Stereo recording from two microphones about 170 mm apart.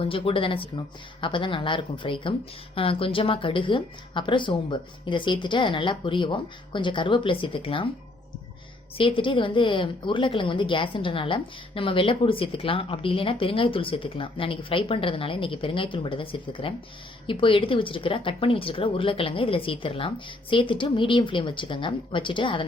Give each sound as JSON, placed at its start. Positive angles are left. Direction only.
{"t": 0.0, "sound": "a woman's voice", "side_deg": 30}
{"t": 9.0, "sound": "a woman's voice", "side_deg": 30}